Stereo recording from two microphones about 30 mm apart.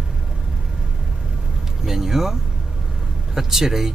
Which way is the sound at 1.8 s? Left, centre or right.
Centre.